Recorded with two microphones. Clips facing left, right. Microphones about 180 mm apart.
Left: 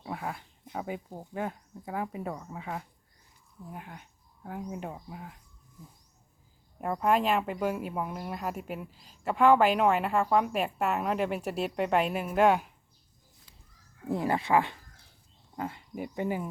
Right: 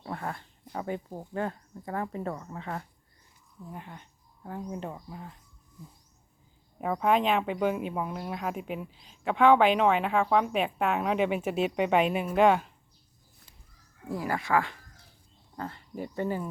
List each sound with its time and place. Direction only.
0.0 s speech: 5° left (ahead or behind)
6.7 s speech: centre (ahead or behind)
14.1 s speech: 25° left (ahead or behind)